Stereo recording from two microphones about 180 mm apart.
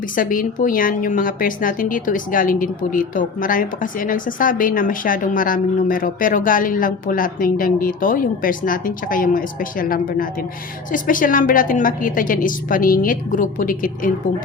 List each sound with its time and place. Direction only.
0.2 s a woman's voice: 50° left (ahead or behind)